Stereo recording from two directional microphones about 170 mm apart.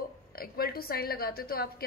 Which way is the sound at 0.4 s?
65° left (ahead or behind).